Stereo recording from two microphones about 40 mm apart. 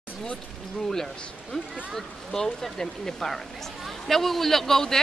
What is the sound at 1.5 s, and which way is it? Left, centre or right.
A man's voice, centre.